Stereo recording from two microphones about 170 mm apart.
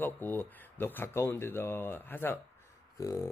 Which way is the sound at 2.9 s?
20° left (ahead or behind).